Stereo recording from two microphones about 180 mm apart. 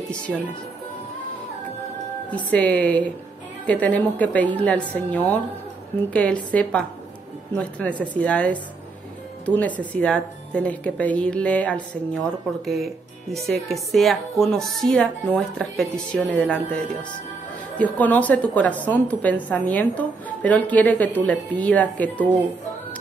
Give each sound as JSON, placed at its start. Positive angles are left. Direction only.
{"t": 2.3, "sound": "a woman's voice", "side_deg": 5}
{"t": 8.0, "sound": "a woman's voice", "side_deg": 5}
{"t": 17.7, "sound": "a woman's voice", "side_deg": 10}